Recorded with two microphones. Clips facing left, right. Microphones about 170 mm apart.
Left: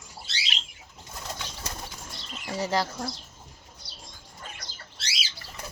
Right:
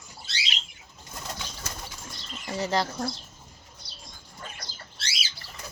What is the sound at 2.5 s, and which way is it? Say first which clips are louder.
Speech: even; 5° left (ahead or behind).